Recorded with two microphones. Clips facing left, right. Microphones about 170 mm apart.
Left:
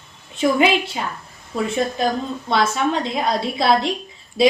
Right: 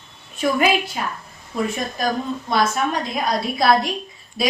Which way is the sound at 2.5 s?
25° left (ahead or behind).